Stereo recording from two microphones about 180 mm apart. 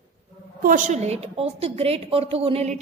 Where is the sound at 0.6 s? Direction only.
45° right (ahead or behind).